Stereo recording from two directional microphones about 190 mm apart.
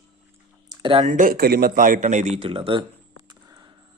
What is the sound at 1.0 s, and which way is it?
Speech, 45° right (ahead or behind).